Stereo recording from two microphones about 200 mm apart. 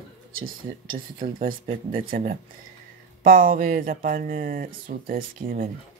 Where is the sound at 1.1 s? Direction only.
45° right (ahead or behind).